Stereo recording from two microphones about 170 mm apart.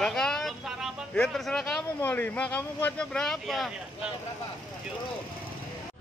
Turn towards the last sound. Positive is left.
turn(degrees=0)  # may be behind; listen again after turning